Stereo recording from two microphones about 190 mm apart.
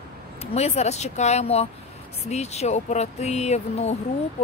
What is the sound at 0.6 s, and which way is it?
Speech, 35° left (ahead or behind).